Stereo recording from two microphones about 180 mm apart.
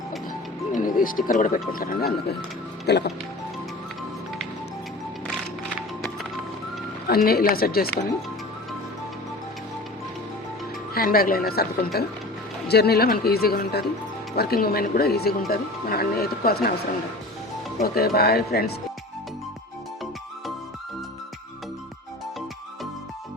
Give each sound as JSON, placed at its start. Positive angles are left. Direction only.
{"t": 0.7, "sound": "speech", "side_deg": 50}
{"t": 7.1, "sound": "speech", "side_deg": 60}
{"t": 10.9, "sound": "speech", "side_deg": 55}
{"t": 17.7, "sound": "speech", "side_deg": 55}